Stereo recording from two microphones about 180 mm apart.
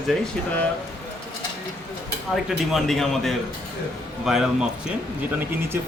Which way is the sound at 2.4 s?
Centre (ahead or behind).